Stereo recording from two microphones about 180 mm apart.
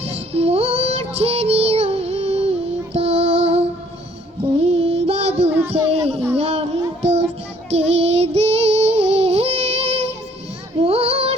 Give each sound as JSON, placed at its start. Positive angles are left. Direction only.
{"t": 0.0, "sound": "child singing", "side_deg": -35}
{"t": 5.5, "sound": "child singing", "side_deg": -10}
{"t": 6.3, "sound": "child singing", "side_deg": -35}
{"t": 10.8, "sound": "music", "side_deg": -35}